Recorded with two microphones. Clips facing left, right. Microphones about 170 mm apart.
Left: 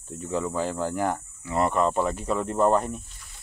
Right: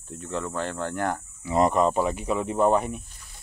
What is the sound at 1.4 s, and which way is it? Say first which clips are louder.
Speech: right 3 dB; 15° right (ahead or behind).